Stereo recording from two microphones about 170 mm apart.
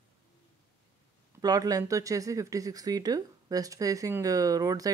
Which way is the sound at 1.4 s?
20° right (ahead or behind).